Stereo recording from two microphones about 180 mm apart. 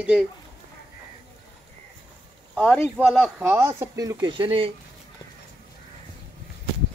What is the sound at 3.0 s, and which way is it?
Speech, 5° right (ahead or behind).